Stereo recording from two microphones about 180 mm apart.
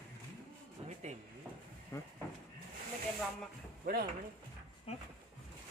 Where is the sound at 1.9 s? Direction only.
15° left (ahead or behind).